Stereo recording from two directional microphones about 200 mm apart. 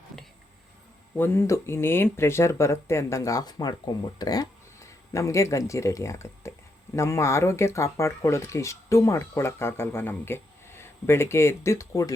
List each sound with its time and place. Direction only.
1.1 s speech: 10° left (ahead or behind)